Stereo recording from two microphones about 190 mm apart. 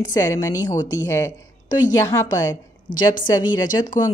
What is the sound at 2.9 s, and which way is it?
Speech, 45° left (ahead or behind).